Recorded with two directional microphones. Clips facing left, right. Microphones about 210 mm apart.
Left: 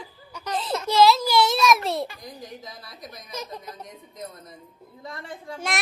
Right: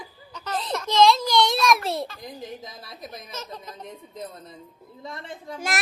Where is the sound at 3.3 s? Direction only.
10° left (ahead or behind).